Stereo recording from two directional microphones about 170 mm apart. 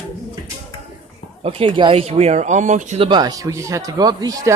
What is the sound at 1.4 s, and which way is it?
Speech, 35° right (ahead or behind).